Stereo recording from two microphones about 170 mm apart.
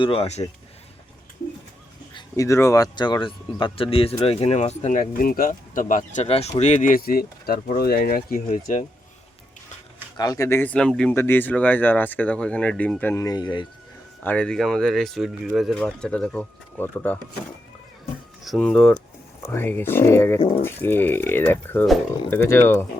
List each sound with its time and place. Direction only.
0.0 s speech: 35° left (ahead or behind)
2.1 s speech: 20° left (ahead or behind); by 8.8 s 60° left (ahead or behind)
10.2 s speech: 20° left (ahead or behind)
14.3 s speech: 5° left (ahead or behind)
18.4 s speech: 5° left (ahead or behind)